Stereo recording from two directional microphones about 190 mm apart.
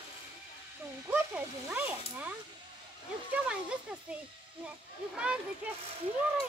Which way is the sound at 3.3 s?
5° right (ahead or behind).